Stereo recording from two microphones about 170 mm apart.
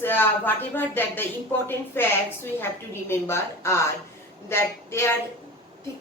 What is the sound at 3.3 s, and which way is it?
A woman's voice, 15° left (ahead or behind).